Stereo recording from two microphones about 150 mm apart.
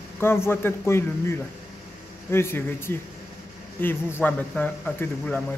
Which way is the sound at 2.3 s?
15° left (ahead or behind).